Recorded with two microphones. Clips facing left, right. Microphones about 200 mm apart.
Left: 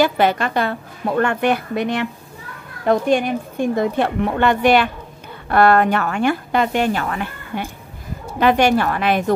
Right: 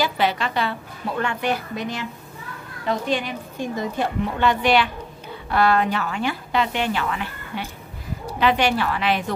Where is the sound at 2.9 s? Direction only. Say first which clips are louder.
Left 8 dB; 50° left (ahead or behind).